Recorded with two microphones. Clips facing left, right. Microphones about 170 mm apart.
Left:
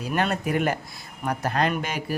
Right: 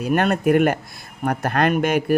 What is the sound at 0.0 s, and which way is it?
A man's voice, 55° right (ahead or behind).